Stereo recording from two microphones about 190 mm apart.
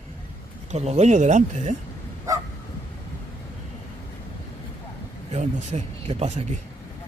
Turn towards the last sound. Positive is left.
turn(degrees=-35)  # may be behind; listen again after turning